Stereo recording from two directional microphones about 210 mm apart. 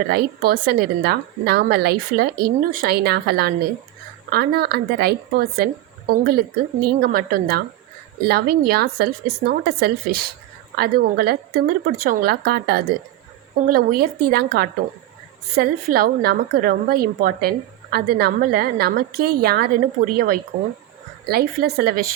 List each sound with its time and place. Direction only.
0.1 s a woman's voice: 45° right (ahead or behind)